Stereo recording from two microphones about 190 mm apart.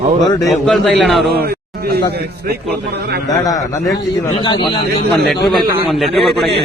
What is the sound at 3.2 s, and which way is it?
A man's voice, 20° left (ahead or behind).